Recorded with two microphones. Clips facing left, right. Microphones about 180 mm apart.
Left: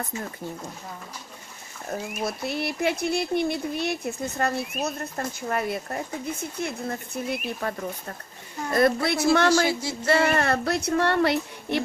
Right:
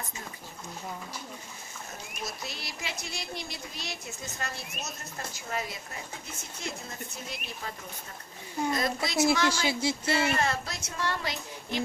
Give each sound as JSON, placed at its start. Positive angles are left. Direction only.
{"t": 1.9, "sound": "speech", "side_deg": 55}
{"t": 8.7, "sound": "speech", "side_deg": 60}